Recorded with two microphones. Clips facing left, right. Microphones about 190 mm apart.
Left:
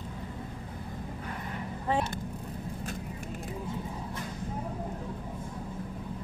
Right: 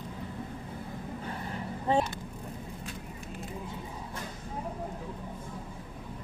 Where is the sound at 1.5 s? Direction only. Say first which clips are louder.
Right 3 dB; 30° right (ahead or behind).